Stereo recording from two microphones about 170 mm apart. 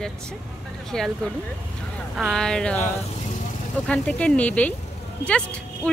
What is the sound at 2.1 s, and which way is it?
Speech, centre (ahead or behind).